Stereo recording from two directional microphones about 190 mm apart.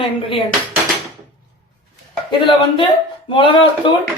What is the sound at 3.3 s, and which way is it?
Speech, 25° left (ahead or behind).